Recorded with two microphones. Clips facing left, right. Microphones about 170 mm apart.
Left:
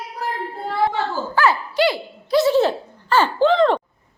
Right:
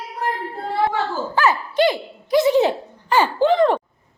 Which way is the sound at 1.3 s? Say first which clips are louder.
Even; 20° right (ahead or behind).